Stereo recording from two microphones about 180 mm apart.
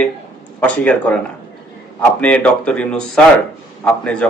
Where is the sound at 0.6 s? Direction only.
5° left (ahead or behind).